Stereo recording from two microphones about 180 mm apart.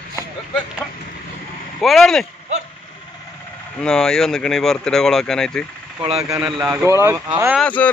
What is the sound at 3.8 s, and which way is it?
Speech, 5° left (ahead or behind).